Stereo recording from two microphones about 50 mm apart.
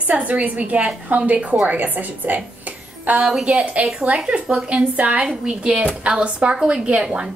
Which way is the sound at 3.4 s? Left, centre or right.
Right.